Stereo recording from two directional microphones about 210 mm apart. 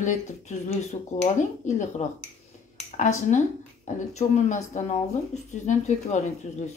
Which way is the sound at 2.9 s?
30° left (ahead or behind).